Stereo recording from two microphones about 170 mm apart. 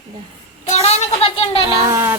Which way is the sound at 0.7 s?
40° left (ahead or behind).